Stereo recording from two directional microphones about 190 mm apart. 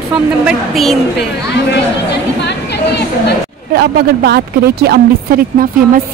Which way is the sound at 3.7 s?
55° right (ahead or behind).